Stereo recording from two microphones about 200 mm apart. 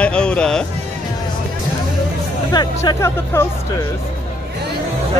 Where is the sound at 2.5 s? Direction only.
20° left (ahead or behind).